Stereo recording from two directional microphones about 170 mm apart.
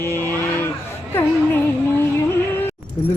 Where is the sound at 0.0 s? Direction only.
15° left (ahead or behind).